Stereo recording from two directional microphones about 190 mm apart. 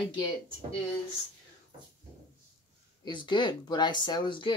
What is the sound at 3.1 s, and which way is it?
Speech, 25° left (ahead or behind).